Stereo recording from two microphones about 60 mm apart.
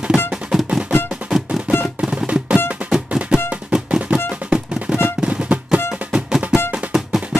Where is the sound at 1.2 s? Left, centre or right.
Right.